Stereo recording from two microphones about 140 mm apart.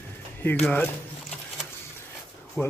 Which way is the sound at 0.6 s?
10° left (ahead or behind).